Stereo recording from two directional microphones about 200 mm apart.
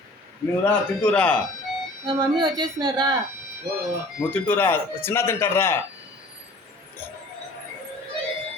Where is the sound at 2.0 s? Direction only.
20° right (ahead or behind).